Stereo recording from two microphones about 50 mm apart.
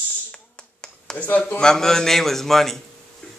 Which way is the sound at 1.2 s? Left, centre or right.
Left.